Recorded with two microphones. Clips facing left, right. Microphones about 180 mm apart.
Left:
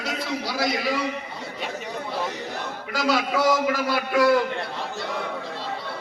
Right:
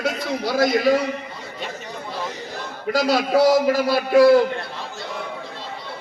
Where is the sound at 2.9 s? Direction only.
40° right (ahead or behind).